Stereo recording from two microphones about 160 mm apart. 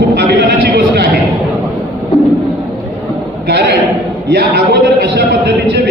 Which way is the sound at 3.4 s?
90° right.